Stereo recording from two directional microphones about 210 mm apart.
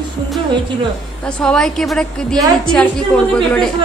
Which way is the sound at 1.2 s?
5° left (ahead or behind).